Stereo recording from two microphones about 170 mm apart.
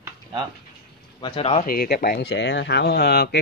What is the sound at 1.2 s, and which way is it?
Speech, 30° left (ahead or behind).